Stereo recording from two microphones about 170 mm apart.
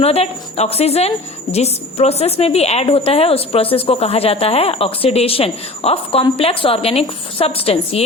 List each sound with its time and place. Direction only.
0.0 s a woman's voice: 35° left (ahead or behind)